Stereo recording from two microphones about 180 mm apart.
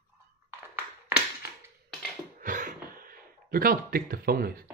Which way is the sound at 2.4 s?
45° right (ahead or behind).